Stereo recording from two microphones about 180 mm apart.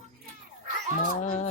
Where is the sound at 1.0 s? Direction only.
45° left (ahead or behind).